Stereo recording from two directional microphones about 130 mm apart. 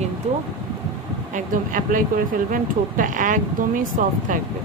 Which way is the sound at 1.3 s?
90° right.